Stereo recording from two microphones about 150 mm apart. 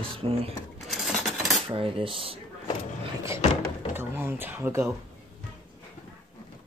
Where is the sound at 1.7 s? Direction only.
35° right (ahead or behind).